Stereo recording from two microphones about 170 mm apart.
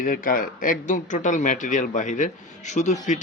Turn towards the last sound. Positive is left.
turn(degrees=45)  # may be behind; listen again after turning